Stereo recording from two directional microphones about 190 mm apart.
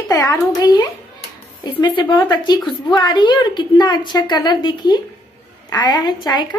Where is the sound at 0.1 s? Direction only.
20° left (ahead or behind).